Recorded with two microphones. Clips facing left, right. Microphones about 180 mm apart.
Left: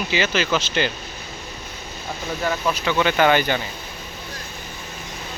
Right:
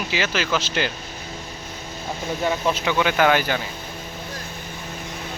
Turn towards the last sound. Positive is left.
turn(degrees=-5)  # may be behind; listen again after turning